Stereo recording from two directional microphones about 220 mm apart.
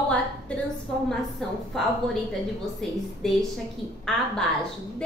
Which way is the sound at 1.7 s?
Centre (ahead or behind).